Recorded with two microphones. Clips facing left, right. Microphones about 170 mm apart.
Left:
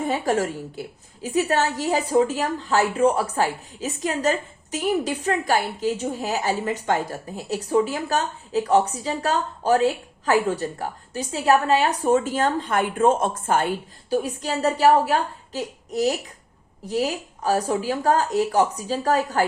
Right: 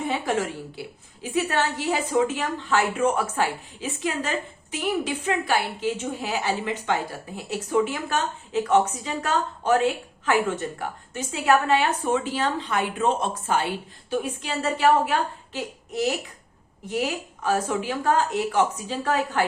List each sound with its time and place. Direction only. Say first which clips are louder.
0.0 s a woman's voice: left 3 dB; 40° left (ahead or behind)